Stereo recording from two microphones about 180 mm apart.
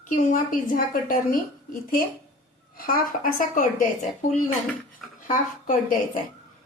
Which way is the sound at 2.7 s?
50° left (ahead or behind).